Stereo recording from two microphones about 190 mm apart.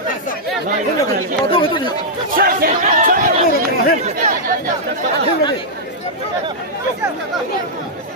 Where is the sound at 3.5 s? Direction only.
50° left (ahead or behind).